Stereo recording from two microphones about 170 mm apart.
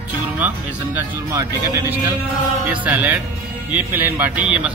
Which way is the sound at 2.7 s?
10° right (ahead or behind).